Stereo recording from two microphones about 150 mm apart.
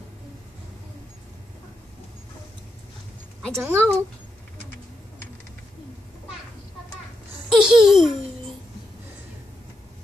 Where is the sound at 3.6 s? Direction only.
15° right (ahead or behind).